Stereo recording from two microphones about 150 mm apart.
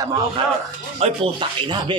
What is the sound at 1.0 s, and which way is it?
Speech, 45° right (ahead or behind).